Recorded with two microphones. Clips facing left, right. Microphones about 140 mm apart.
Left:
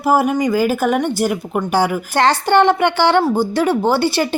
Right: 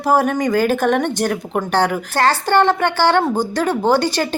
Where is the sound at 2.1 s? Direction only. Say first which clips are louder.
Left 2 dB; 15° left (ahead or behind).